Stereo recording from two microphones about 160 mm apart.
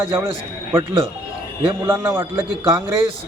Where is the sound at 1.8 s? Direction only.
15° right (ahead or behind).